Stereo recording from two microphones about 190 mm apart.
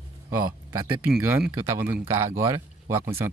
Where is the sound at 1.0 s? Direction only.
10° right (ahead or behind).